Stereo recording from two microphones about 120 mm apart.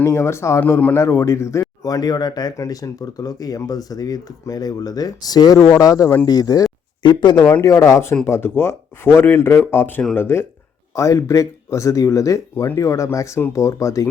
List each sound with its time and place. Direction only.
0.0 s speech: 20° left (ahead or behind)
7.0 s speech: 40° left (ahead or behind)
7.4 s speech: 25° left (ahead or behind)